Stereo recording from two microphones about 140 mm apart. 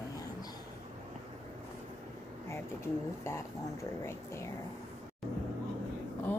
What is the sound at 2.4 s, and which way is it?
Speech, 20° left (ahead or behind).